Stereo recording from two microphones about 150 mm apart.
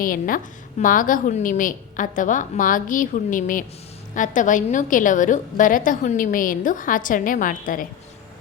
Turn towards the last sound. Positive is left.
turn(degrees=65)  # may be behind; listen again after turning